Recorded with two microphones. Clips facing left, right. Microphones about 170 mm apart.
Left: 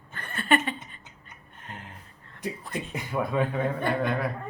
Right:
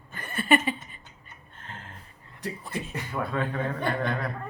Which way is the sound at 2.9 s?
15° left (ahead or behind).